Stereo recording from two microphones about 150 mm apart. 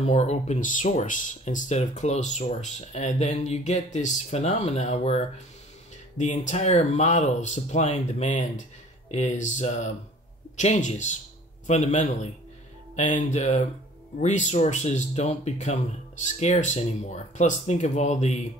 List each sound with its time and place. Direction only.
0.0 s speech: 45° left (ahead or behind)